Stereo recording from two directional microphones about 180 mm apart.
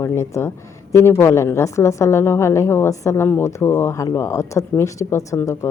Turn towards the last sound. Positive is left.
turn(degrees=15)  # may be behind; listen again after turning